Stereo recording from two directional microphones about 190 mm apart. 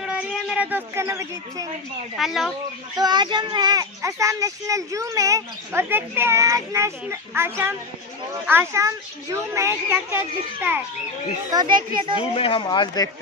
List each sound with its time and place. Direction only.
0.0 s speech: 5° right (ahead or behind)
2.1 s speech: centre (ahead or behind)
3.0 s speech: 20° right (ahead or behind)
11.9 s speech: 25° right (ahead or behind)
12.2 s speech: 30° left (ahead or behind)